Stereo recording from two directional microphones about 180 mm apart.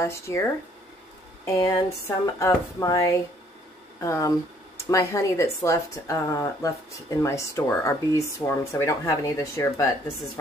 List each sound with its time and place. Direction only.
0.0 s speech: 15° left (ahead or behind)